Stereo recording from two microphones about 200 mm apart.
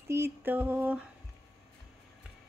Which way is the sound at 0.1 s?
10° right (ahead or behind).